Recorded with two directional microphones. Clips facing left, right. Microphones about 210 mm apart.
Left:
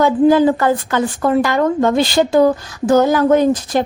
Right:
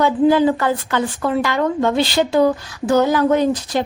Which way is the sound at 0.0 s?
45° left (ahead or behind).